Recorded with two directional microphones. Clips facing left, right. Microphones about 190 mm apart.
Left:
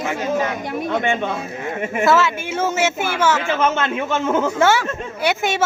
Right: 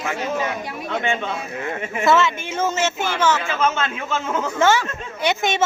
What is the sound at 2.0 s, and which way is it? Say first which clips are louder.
A man's voice: even; 5° left (ahead or behind).